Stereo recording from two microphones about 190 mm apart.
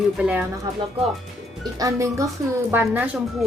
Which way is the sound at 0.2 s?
5° right (ahead or behind).